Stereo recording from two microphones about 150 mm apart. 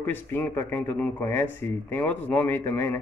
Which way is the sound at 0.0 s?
15° left (ahead or behind).